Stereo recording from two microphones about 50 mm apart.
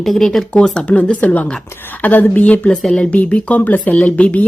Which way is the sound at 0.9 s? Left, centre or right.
Left.